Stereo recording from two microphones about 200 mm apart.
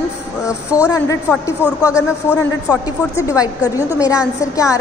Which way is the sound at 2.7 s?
15° left (ahead or behind).